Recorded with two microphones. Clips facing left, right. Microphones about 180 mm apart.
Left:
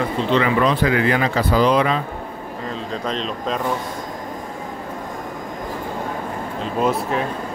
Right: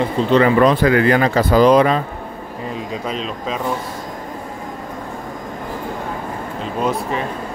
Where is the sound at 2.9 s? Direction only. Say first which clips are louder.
Left 2 dB; 5° right (ahead or behind).